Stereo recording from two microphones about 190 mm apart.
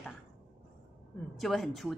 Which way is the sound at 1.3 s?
Centre (ahead or behind).